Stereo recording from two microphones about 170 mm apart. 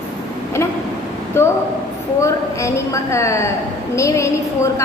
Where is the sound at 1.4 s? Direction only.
15° left (ahead or behind).